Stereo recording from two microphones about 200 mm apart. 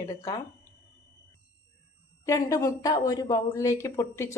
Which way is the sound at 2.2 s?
15° left (ahead or behind).